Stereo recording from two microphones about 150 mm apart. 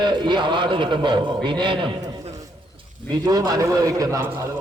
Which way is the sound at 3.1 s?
25° right (ahead or behind).